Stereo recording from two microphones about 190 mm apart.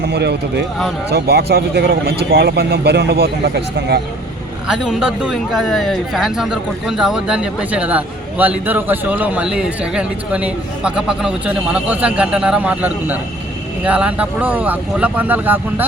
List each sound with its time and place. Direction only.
0.0 s speech: 60° right (ahead or behind)
4.7 s speech: 5° right (ahead or behind)